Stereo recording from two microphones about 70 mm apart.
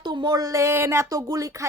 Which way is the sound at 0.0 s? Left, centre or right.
Right.